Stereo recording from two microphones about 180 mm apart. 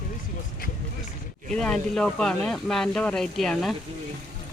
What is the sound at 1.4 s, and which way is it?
Speech, 5° left (ahead or behind).